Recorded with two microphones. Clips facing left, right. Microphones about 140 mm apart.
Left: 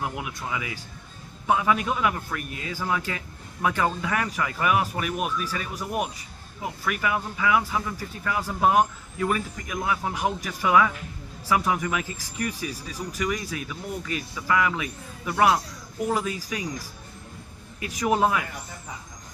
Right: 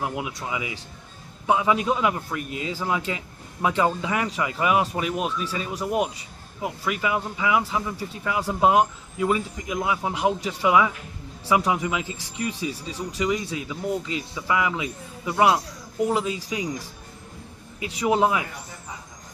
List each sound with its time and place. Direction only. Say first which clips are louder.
0.0 s speech: right 2 dB; 20° right (ahead or behind)